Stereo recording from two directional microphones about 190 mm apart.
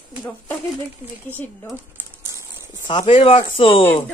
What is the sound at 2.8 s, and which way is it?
Speech, 25° left (ahead or behind).